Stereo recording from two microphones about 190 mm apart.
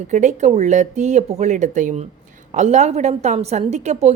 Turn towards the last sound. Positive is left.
turn(degrees=-35)  # may be behind; listen again after turning